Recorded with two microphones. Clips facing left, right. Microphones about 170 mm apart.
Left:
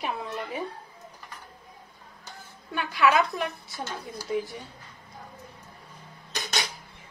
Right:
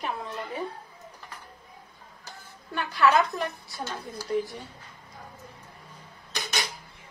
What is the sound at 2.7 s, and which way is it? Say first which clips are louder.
A woman's voice: even; centre (ahead or behind).